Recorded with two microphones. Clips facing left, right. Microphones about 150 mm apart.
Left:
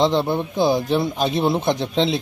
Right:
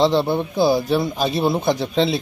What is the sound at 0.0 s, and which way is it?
Speech, 15° left (ahead or behind).